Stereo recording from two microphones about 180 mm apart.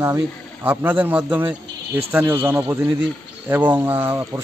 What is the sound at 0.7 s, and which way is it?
Speech, 10° right (ahead or behind).